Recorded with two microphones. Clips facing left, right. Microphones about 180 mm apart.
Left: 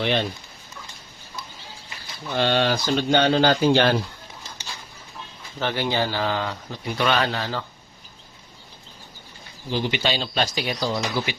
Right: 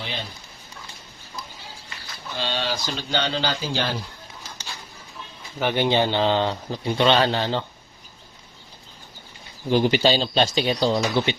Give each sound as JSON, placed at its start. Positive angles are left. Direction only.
{"t": 0.0, "sound": "speech", "side_deg": 65}
{"t": 2.3, "sound": "speech", "side_deg": 60}
{"t": 5.5, "sound": "speech", "side_deg": -15}
{"t": 9.6, "sound": "speech", "side_deg": -50}